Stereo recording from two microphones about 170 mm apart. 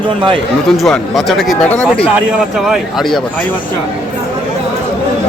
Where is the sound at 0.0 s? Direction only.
30° right (ahead or behind).